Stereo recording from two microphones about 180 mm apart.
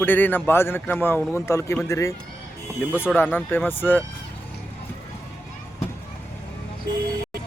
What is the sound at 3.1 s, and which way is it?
Speech, 10° left (ahead or behind).